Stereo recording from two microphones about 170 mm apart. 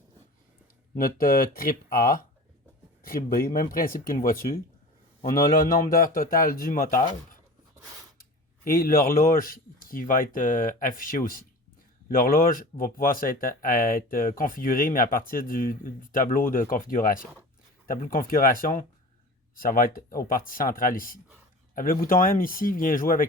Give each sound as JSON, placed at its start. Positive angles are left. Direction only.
{"t": 0.9, "sound": "speech", "side_deg": 60}
{"t": 8.2, "sound": "speech", "side_deg": 60}